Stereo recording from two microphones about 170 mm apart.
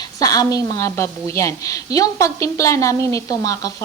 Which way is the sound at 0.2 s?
20° left (ahead or behind).